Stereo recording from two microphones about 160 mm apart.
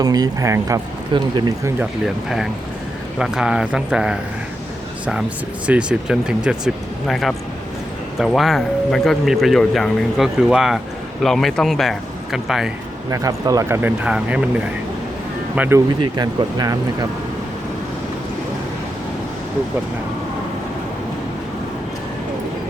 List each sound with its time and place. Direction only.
0.0 s speech: 25° right (ahead or behind)
3.2 s speech: 5° right (ahead or behind)
5.6 s speech: 5° right (ahead or behind)
13.1 s speech: 20° right (ahead or behind)
13.8 s speech: 10° right (ahead or behind)
15.5 s speech: 10° right (ahead or behind)
16.0 s speech: 25° right (ahead or behind)